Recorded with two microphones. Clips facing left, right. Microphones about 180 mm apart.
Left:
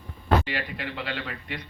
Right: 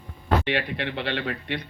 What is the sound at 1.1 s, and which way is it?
Speech, 65° right (ahead or behind).